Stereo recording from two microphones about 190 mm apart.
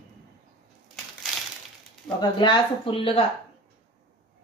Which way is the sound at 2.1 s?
25° left (ahead or behind).